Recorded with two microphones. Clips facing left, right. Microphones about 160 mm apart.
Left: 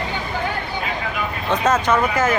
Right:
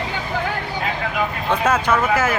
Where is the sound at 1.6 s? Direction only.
10° right (ahead or behind).